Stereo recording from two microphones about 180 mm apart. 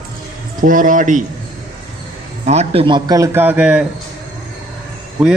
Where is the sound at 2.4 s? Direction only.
35° right (ahead or behind); by 3.8 s 5° right (ahead or behind).